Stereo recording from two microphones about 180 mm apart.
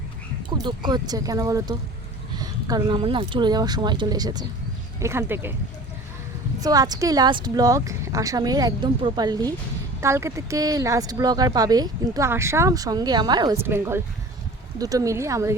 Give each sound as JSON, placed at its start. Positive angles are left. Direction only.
{"t": 0.6, "sound": "speech", "side_deg": -25}
{"t": 6.6, "sound": "speech", "side_deg": -20}